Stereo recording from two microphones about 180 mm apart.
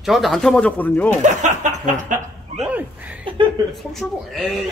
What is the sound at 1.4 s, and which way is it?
Chuckle, 45° right (ahead or behind).